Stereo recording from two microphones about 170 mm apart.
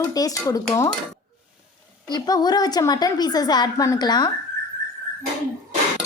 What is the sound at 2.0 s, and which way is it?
A woman's voice, 25° left (ahead or behind).